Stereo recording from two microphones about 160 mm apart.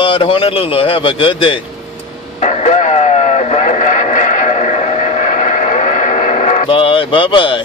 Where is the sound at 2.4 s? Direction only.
50° left (ahead or behind).